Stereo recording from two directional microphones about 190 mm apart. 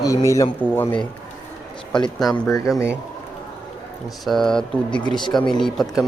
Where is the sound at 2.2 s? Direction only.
Centre (ahead or behind).